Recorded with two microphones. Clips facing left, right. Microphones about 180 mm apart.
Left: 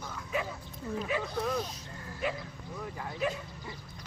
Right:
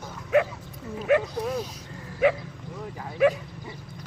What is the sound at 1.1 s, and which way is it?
Dog, 70° right (ahead or behind).